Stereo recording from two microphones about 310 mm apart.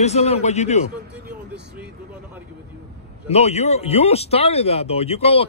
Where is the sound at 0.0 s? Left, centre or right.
Left.